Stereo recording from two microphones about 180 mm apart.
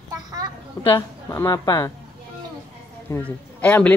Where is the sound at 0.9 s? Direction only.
15° left (ahead or behind).